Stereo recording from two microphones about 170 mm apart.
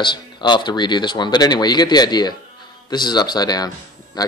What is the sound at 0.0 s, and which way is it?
Speech, 25° left (ahead or behind).